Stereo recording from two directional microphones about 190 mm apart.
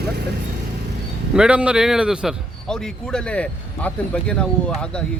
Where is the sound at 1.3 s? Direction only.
5° right (ahead or behind).